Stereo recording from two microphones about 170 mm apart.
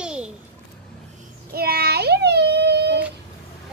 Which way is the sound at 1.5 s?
65° right (ahead or behind).